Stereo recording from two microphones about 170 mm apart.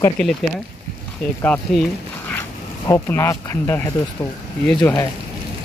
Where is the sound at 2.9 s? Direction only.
15° left (ahead or behind).